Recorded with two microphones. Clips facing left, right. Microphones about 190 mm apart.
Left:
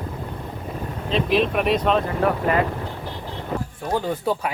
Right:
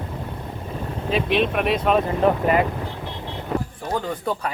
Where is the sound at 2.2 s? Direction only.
20° right (ahead or behind).